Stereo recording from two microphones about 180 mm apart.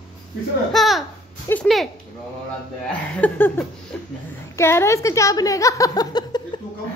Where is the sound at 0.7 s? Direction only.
Centre (ahead or behind).